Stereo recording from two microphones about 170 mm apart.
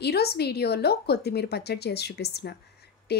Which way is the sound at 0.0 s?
70° left (ahead or behind).